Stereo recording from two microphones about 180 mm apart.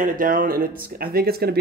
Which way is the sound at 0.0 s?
50° right (ahead or behind).